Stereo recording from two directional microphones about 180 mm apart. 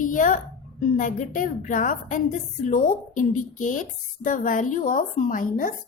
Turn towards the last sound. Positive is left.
turn(degrees=50)  # may be behind; listen again after turning